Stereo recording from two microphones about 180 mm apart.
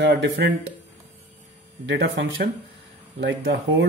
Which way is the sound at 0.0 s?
75° right (ahead or behind).